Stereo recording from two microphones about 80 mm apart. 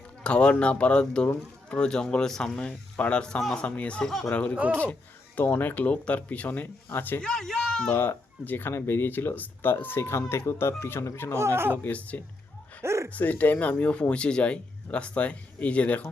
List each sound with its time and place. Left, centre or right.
0.2 s speech: centre
4.3 s speech: centre
7.2 s speech: centre
7.9 s speech: left
11.3 s speech: right
11.8 s speech: centre
12.8 s a sound: right
13.1 s speech: left